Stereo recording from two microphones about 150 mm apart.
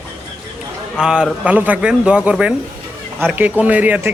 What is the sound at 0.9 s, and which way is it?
Speech, 5° right (ahead or behind).